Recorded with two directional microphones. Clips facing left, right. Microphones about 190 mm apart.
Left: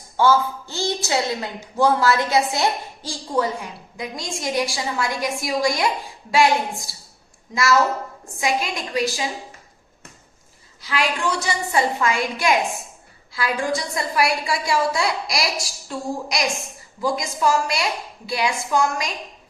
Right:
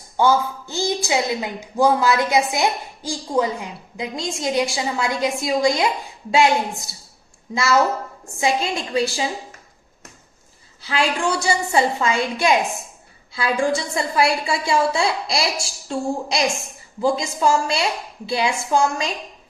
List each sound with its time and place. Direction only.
0.2 s a woman's voice: 15° right (ahead or behind)
7.5 s a woman's voice: 25° right (ahead or behind)
10.8 s a woman's voice: 30° right (ahead or behind)